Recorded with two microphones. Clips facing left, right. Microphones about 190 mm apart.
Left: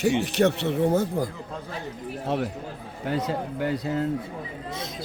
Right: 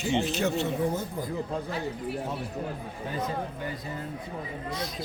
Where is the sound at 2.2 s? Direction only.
90° left.